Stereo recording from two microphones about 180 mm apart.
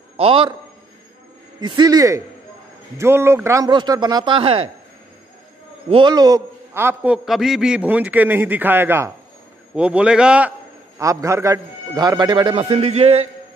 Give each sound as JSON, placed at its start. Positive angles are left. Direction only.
{"t": 0.2, "sound": "a man's voice", "side_deg": -30}
{"t": 1.6, "sound": "a man's voice", "side_deg": -20}
{"t": 5.9, "sound": "a man's voice", "side_deg": -25}
{"t": 11.0, "sound": "a man's voice", "side_deg": -20}